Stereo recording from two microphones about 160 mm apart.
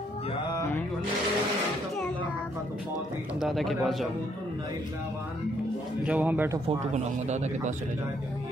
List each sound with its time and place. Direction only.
0.6 s a sound: 15° left (ahead or behind)
3.3 s a man's voice: centre (ahead or behind)
6.0 s speech: 10° right (ahead or behind)
6.9 s speech: 45° right (ahead or behind)